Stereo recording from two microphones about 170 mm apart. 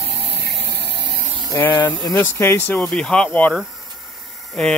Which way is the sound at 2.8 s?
5° left (ahead or behind).